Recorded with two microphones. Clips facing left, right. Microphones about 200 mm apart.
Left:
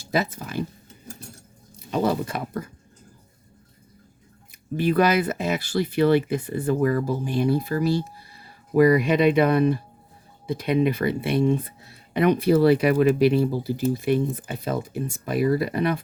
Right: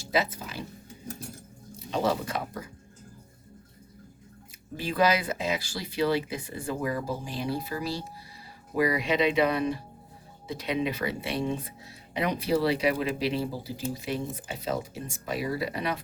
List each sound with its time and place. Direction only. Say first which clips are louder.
0.1 s speech: left 3 dB; 50° left (ahead or behind)
1.9 s a sound: left 4 dB; 55° left (ahead or behind)
4.8 s speech: left 6 dB; 55° left (ahead or behind)